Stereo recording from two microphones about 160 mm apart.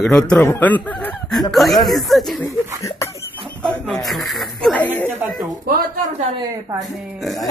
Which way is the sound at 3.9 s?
Centre (ahead or behind).